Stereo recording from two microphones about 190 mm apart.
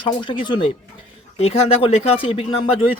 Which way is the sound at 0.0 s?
25° left (ahead or behind).